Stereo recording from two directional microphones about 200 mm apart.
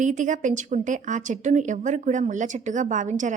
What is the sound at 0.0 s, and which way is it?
A woman's voice, 40° right (ahead or behind).